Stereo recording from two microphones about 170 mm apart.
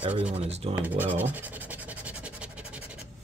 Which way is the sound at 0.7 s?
10° right (ahead or behind).